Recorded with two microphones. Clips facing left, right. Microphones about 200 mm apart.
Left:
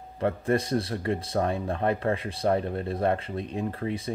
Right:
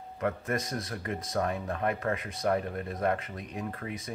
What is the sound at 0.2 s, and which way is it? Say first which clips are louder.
Speech: left 6 dB; 30° left (ahead or behind).